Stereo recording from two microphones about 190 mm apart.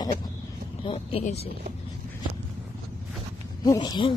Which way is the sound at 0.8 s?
30° left (ahead or behind).